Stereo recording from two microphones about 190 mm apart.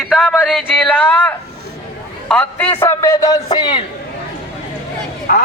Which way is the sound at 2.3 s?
10° left (ahead or behind).